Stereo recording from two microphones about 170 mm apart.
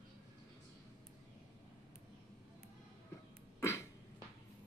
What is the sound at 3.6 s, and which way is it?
Beatboxing, 15° left (ahead or behind).